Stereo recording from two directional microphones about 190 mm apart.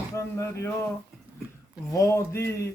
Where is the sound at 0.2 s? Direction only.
15° left (ahead or behind).